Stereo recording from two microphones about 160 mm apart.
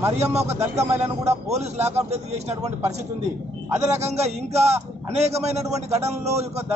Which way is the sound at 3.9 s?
40° right (ahead or behind).